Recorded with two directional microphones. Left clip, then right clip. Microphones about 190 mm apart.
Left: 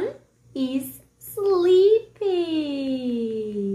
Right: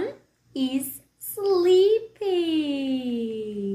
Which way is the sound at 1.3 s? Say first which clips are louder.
Left 2 dB; 10° right (ahead or behind).